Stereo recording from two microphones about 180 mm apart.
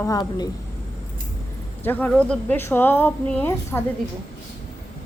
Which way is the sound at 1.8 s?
10° left (ahead or behind).